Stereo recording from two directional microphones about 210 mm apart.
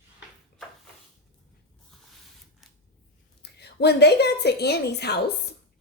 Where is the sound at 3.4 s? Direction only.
50° left (ahead or behind).